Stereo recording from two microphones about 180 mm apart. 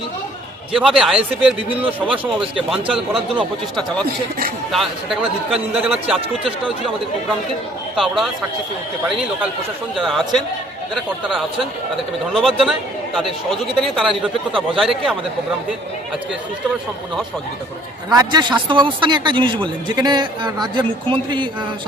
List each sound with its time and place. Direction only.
0.8 s speech: 5° right (ahead or behind)
7.9 s speech: centre (ahead or behind)
13.8 s speech: centre (ahead or behind)
18.1 s a man's voice: 20° right (ahead or behind)